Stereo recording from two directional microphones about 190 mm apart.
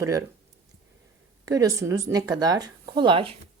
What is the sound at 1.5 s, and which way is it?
A woman's voice, 15° right (ahead or behind).